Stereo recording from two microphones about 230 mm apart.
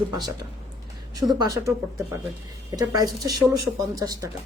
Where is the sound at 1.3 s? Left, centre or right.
Centre.